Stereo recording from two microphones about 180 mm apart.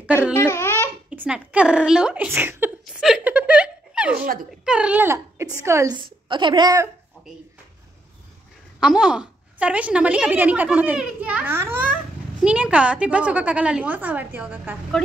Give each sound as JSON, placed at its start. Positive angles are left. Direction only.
{"t": 0.0, "sound": "speech", "side_deg": -10}
{"t": 0.5, "sound": "babbling", "side_deg": 15}
{"t": 1.1, "sound": "a woman's voice", "side_deg": -5}
{"t": 2.8, "sound": "a sound", "side_deg": -5}
{"t": 4.6, "sound": "a woman's voice", "side_deg": -5}
{"t": 7.2, "sound": "a sound", "side_deg": 0}
{"t": 8.7, "sound": "a woman's voice", "side_deg": -5}